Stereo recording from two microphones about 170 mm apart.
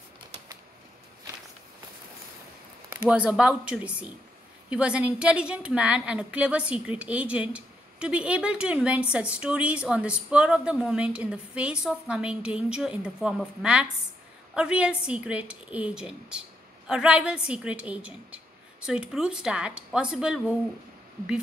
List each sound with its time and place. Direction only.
3.1 s a woman's voice: 5° right (ahead or behind)